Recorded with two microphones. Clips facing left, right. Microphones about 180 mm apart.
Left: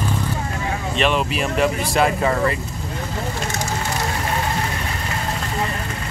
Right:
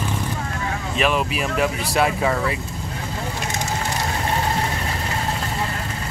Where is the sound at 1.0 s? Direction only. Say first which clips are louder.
Left 1 dB; centre (ahead or behind).